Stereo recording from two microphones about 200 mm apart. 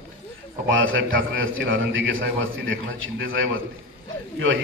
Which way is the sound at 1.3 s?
75° right (ahead or behind).